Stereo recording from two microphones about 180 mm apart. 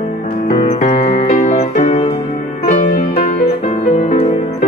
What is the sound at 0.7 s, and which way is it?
Music, 35° left (ahead or behind).